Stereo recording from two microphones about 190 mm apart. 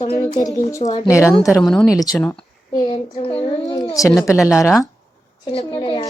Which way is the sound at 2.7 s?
25° left (ahead or behind).